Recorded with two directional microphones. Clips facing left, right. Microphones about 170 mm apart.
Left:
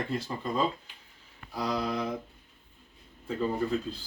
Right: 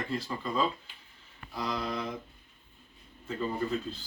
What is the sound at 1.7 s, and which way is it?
Speech, 10° left (ahead or behind).